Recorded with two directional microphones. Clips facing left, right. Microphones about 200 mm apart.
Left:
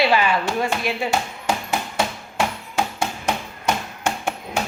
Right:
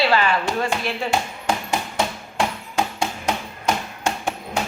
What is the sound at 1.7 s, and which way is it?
Hammer, 5° left (ahead or behind).